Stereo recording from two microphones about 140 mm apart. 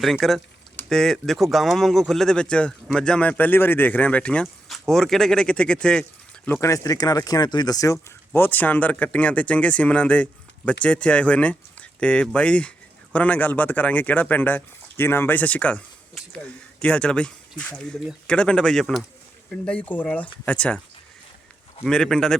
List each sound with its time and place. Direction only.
0.0 s speech: centre (ahead or behind)
6.7 s speech: 25° left (ahead or behind)
8.3 s speech: 15° left (ahead or behind)
21.8 s speech: 5° left (ahead or behind)